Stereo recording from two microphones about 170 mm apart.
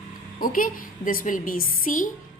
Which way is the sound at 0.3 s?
55° left (ahead or behind).